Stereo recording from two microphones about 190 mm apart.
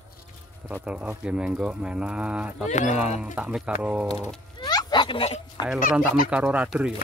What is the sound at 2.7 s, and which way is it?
Speech, 40° left (ahead or behind).